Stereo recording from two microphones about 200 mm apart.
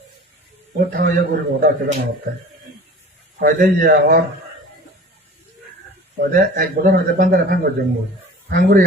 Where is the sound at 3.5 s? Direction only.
45° right (ahead or behind).